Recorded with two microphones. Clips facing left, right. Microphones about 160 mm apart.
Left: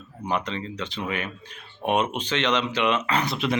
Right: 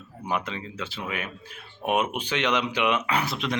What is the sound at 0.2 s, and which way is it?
Speech, 5° right (ahead or behind).